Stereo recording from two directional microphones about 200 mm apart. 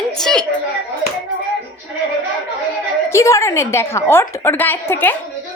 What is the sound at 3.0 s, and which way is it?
A woman's voice, 15° left (ahead or behind).